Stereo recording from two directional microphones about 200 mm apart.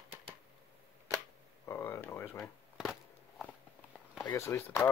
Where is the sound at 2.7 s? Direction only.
Centre (ahead or behind).